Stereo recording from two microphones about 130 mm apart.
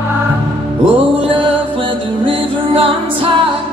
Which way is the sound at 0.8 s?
45° right (ahead or behind).